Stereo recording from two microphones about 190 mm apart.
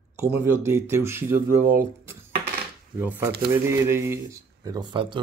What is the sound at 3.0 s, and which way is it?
A man's voice, 10° right (ahead or behind).